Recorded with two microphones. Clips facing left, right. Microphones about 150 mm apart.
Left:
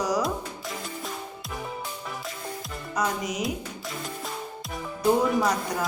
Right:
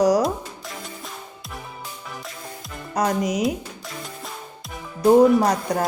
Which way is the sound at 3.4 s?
Centre (ahead or behind).